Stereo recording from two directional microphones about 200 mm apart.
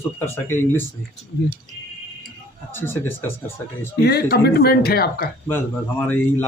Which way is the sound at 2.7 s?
10° left (ahead or behind).